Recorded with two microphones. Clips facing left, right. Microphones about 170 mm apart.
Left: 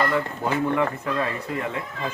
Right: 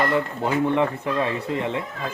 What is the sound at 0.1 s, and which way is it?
Speech, 20° right (ahead or behind).